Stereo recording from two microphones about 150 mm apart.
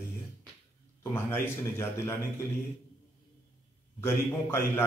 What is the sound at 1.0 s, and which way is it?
A man's voice, 15° left (ahead or behind).